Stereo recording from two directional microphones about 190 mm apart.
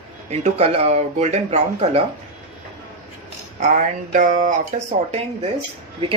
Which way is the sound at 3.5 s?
40° right (ahead or behind).